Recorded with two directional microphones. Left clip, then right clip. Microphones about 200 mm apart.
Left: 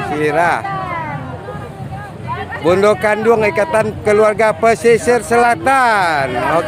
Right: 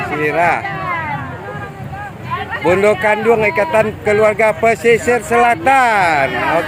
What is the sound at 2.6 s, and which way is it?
Speech, 15° left (ahead or behind).